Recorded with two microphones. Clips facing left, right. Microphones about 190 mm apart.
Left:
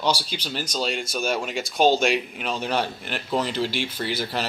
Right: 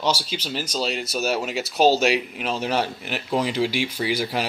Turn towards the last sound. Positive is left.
turn(degrees=-10)  # may be behind; listen again after turning